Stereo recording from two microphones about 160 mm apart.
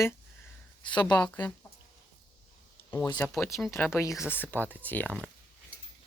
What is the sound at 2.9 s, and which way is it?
Speech, 20° left (ahead or behind).